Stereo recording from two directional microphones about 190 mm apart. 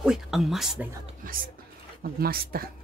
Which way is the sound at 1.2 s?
50° right (ahead or behind).